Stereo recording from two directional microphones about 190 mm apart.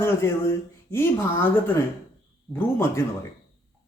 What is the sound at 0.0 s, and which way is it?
Speech, 15° left (ahead or behind).